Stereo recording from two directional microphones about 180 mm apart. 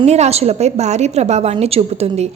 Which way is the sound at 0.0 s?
35° right (ahead or behind).